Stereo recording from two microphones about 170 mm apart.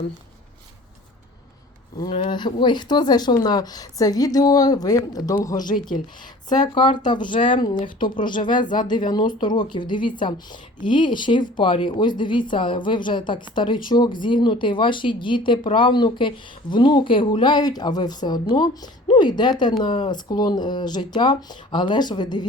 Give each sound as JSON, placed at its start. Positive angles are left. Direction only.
{"t": 2.0, "sound": "a woman's voice", "side_deg": 25}
{"t": 6.7, "sound": "a woman's voice", "side_deg": 30}